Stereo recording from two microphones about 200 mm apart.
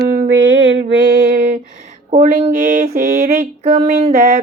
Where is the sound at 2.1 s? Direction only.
35° right (ahead or behind).